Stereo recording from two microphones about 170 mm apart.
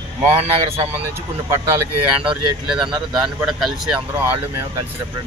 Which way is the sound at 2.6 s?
5° right (ahead or behind).